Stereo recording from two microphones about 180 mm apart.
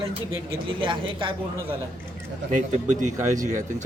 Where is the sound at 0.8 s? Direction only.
30° right (ahead or behind).